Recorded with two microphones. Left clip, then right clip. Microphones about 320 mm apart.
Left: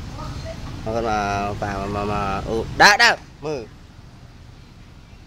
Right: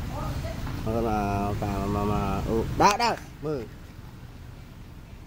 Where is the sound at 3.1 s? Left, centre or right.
Left.